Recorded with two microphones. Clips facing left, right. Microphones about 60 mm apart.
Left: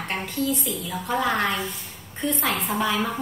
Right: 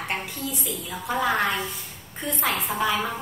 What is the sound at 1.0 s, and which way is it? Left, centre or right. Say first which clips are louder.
A woman's voice: even; centre.